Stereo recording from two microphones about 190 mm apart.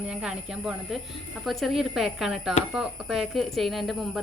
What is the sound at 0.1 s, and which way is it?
Speech, 5° right (ahead or behind).